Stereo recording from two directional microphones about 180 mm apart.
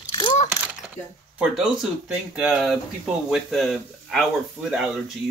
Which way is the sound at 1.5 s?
5° right (ahead or behind).